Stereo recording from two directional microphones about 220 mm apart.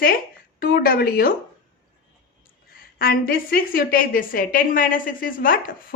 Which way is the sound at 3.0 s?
45° left (ahead or behind).